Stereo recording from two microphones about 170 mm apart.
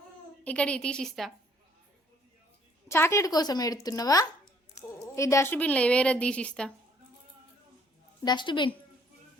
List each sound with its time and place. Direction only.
0.4 s a woman's voice: 5° left (ahead or behind)
2.9 s a woman's voice: 15° left (ahead or behind)
8.2 s a woman's voice: 25° left (ahead or behind)